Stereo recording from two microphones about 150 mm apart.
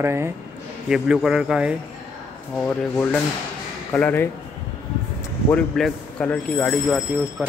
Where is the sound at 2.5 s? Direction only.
10° left (ahead or behind).